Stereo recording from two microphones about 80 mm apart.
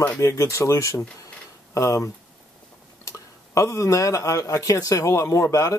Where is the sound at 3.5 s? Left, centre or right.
Left.